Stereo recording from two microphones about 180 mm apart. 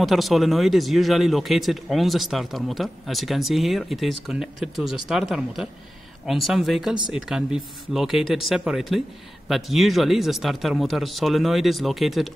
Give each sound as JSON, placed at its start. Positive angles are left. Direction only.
{"t": 0.0, "sound": "speech", "side_deg": 0}
{"t": 6.2, "sound": "speech", "side_deg": 0}